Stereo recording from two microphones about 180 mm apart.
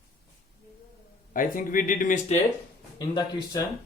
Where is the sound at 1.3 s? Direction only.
50° left (ahead or behind).